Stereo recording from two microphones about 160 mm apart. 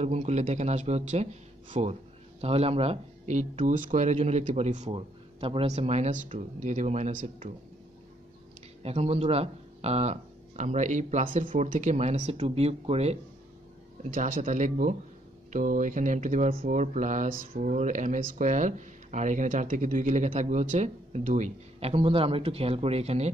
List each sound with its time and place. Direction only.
0.0 s speech: 45° right (ahead or behind)
4.9 s speech: 35° right (ahead or behind); by 7.5 s 55° right (ahead or behind)
8.8 s speech: 40° right (ahead or behind)
14.1 s speech: 55° right (ahead or behind)